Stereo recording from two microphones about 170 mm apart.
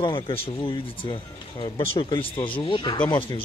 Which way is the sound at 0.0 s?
30° left (ahead or behind).